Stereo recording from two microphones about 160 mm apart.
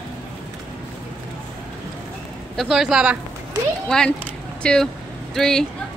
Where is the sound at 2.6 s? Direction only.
Centre (ahead or behind).